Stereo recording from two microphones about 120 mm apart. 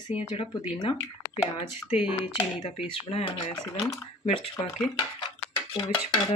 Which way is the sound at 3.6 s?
25° left (ahead or behind).